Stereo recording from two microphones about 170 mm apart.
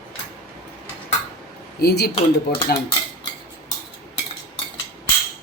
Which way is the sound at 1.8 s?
65° left (ahead or behind).